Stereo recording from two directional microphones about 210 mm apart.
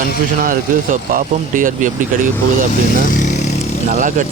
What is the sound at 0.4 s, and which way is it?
Speech, 40° right (ahead or behind).